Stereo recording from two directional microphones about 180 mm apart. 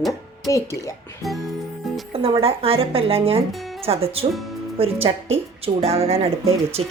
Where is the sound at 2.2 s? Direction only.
30° right (ahead or behind).